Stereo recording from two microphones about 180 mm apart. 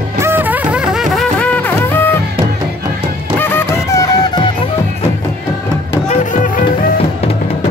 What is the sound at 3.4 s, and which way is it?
Music, 10° left (ahead or behind).